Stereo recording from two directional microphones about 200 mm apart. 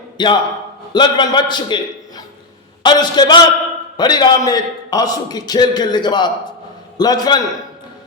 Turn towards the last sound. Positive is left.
turn(degrees=20)  # may be behind; listen again after turning